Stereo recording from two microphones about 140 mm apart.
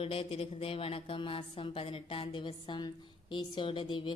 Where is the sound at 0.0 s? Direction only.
40° left (ahead or behind).